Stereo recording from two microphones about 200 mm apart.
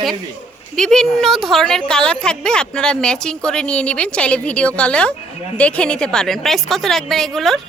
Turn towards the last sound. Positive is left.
turn(degrees=0)  # may be behind; listen again after turning